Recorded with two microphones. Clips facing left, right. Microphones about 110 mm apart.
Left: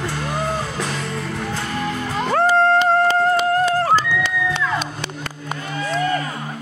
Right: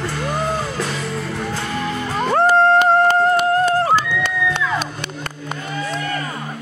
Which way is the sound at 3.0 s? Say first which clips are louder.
Right 2 dB; 55° right (ahead or behind).